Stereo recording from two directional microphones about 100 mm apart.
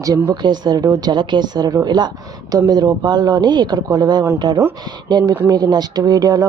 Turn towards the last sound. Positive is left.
turn(degrees=-40)  # may be behind; listen again after turning